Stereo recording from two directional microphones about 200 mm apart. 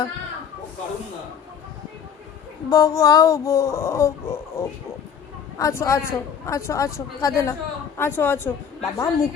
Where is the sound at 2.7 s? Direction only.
20° left (ahead or behind).